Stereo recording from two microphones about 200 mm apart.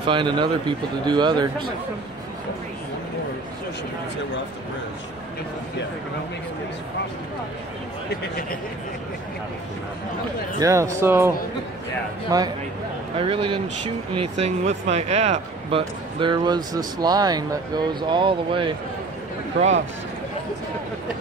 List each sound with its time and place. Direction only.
0.0 s speech: 25° right (ahead or behind)
10.6 s speech: 15° right (ahead or behind)